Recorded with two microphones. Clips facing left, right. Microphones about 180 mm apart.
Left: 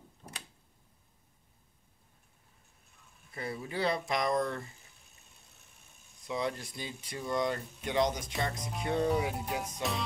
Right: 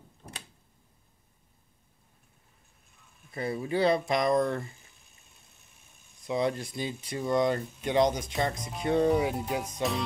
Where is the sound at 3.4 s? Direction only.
25° right (ahead or behind).